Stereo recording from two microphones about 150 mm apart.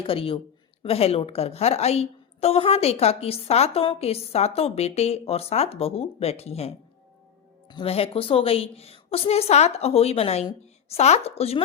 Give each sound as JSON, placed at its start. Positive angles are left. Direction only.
{"t": 0.0, "sound": "a woman's voice", "side_deg": 40}